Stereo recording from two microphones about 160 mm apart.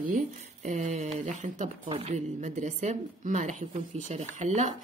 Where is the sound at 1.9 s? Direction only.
40° right (ahead or behind).